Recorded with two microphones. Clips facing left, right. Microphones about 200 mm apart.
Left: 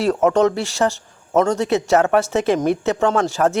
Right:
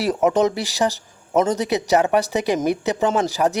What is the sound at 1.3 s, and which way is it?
Speech, 15° right (ahead or behind).